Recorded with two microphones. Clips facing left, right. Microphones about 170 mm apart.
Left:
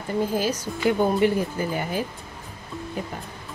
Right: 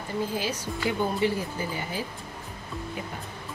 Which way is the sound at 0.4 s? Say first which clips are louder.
Left 5 dB; 45° left (ahead or behind).